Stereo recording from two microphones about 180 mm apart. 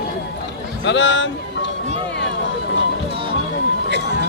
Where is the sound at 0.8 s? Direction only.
90° left.